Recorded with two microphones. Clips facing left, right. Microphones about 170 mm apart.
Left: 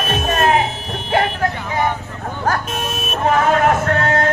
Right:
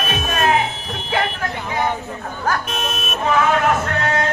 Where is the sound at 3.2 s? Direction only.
50° left (ahead or behind).